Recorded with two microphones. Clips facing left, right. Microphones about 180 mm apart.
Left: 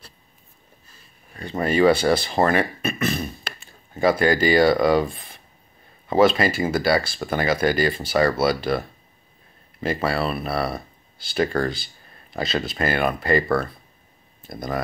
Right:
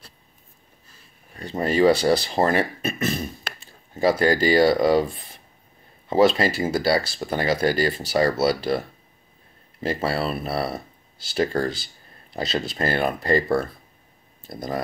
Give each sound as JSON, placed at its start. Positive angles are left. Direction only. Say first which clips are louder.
{"t": 1.4, "sound": "speech", "louder": "left 1 dB", "side_deg": -35}
{"t": 6.0, "sound": "speech", "louder": "left 1 dB", "side_deg": -30}